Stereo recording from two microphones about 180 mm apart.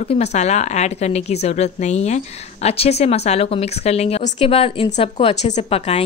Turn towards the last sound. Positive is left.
turn(degrees=35)  # may be behind; listen again after turning